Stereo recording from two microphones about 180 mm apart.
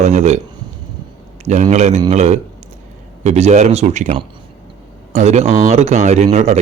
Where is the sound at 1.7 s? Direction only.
40° right (ahead or behind).